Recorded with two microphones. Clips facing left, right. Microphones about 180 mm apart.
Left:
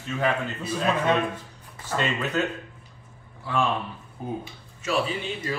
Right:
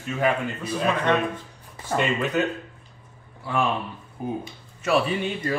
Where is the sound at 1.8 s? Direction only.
15° right (ahead or behind).